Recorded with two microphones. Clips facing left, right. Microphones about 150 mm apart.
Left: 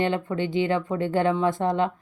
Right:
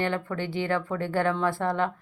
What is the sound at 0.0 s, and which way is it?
Speech, 20° left (ahead or behind).